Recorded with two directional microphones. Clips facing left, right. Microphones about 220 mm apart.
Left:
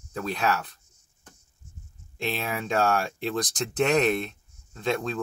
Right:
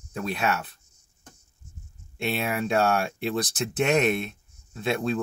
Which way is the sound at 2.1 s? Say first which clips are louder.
Right 3 dB; 10° right (ahead or behind).